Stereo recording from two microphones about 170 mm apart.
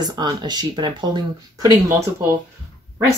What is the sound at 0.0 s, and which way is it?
Speech, 25° right (ahead or behind).